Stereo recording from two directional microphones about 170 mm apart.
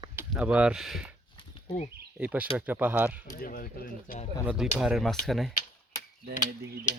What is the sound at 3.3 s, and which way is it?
Speech, 55° left (ahead or behind).